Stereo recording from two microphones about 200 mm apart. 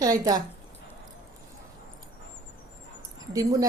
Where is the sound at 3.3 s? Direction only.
15° right (ahead or behind).